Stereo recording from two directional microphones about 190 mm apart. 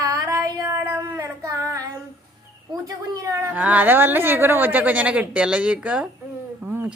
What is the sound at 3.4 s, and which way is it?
Speech, 10° right (ahead or behind).